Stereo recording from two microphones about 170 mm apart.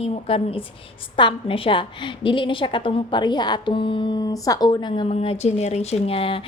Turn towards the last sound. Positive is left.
turn(degrees=35)  # may be behind; listen again after turning